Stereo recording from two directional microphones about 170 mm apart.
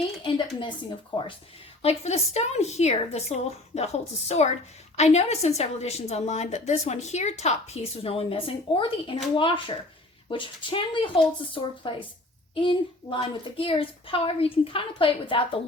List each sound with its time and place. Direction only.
0.2 s a woman's voice: 30° left (ahead or behind)
4.9 s a woman's voice: 40° left (ahead or behind)